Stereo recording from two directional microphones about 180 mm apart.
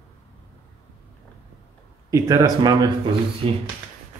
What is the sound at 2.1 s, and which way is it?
A man's voice, 20° right (ahead or behind).